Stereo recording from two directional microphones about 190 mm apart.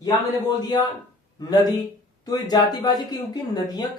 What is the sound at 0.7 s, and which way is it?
Speech, 20° left (ahead or behind).